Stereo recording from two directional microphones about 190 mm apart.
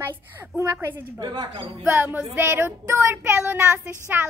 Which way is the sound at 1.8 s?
10° right (ahead or behind).